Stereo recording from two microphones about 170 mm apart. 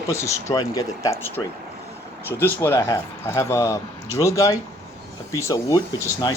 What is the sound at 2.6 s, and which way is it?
Speech, 15° left (ahead or behind).